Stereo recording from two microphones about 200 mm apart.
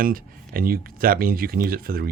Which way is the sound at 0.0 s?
45° right (ahead or behind).